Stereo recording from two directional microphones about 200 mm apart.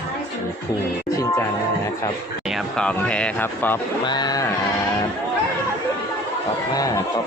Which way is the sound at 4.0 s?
20° left (ahead or behind).